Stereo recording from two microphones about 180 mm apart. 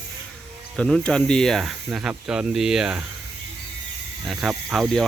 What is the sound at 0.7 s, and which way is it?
Speech, 5° left (ahead or behind).